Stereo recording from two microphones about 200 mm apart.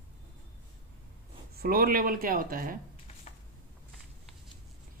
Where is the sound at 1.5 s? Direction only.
50° right (ahead or behind).